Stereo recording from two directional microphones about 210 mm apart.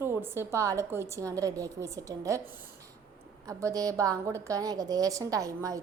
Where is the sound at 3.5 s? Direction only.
15° right (ahead or behind).